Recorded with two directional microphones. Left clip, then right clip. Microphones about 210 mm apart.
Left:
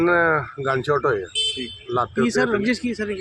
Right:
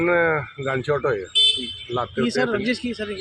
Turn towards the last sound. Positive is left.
turn(degrees=35)  # may be behind; listen again after turning